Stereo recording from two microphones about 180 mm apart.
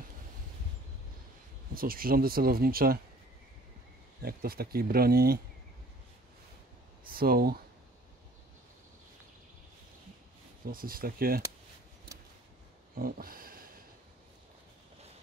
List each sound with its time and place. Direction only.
1.7 s speech: 55° right (ahead or behind)
4.2 s speech: 55° right (ahead or behind)
7.1 s speech: 55° right (ahead or behind)
10.7 s speech: 55° right (ahead or behind)
12.9 s a sound: 55° right (ahead or behind)